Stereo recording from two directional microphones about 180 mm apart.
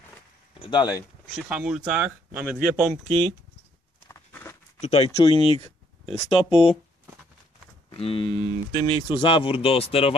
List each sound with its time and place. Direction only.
0.6 s speech: 25° left (ahead or behind)
1.3 s speech: centre (ahead or behind)
4.1 s patter: 15° left (ahead or behind)
4.7 s speech: 35° left (ahead or behind)
7.9 s speech: 30° left (ahead or behind)